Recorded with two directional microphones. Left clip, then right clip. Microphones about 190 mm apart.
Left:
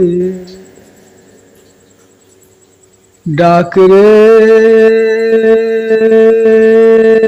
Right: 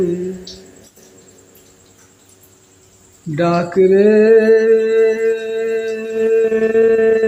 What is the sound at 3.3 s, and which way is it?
Mantra, 30° left (ahead or behind).